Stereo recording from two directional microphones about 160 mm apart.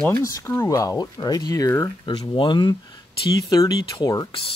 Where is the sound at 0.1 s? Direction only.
20° left (ahead or behind).